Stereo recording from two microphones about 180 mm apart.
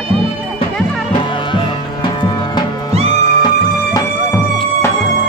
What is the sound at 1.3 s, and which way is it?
Music, 25° left (ahead or behind).